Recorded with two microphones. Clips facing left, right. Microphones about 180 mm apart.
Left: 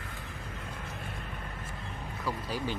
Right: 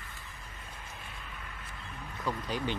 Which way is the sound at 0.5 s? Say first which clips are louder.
Left 6 dB; 60° left (ahead or behind).